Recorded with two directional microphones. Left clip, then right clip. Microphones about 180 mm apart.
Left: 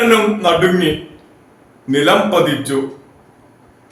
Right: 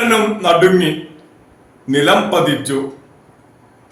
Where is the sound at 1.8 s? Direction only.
10° right (ahead or behind).